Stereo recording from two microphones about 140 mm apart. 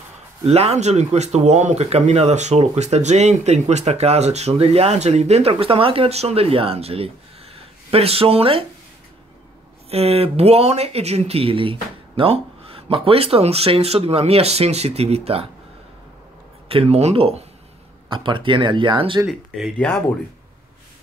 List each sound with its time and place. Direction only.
0.5 s speech: 50° right (ahead or behind)
9.8 s speech: 45° right (ahead or behind)
16.6 s speech: 45° right (ahead or behind)
19.2 s speech: centre (ahead or behind)